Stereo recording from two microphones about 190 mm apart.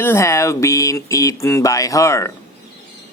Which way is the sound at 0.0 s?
15° left (ahead or behind).